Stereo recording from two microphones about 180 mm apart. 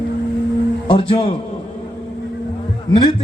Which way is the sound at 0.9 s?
30° left (ahead or behind).